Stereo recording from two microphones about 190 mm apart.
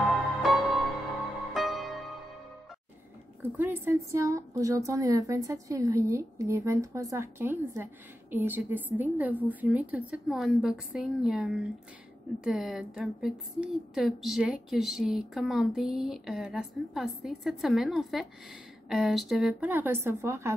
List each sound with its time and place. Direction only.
0.4 s music: centre (ahead or behind)
3.4 s a woman's voice: 10° right (ahead or behind)